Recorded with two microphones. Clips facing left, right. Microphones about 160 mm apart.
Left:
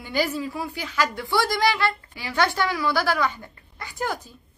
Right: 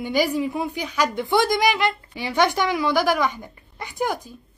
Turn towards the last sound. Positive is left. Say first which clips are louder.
# right 4 dB
turn(degrees=-15)  # may be behind; listen again after turning